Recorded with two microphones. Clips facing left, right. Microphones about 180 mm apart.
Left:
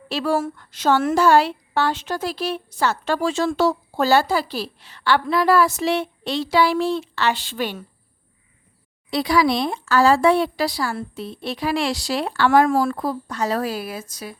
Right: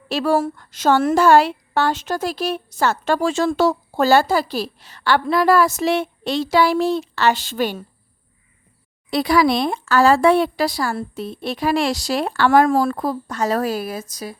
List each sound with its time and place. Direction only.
0.1 s a woman's voice: 45° right (ahead or behind)
9.0 s a woman's voice: 50° right (ahead or behind)
12.6 s a woman's voice: 35° right (ahead or behind)